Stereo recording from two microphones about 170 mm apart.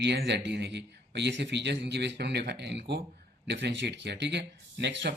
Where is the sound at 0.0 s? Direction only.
90° right.